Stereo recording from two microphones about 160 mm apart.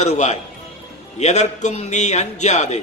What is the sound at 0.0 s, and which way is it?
A man's voice, 45° left (ahead or behind).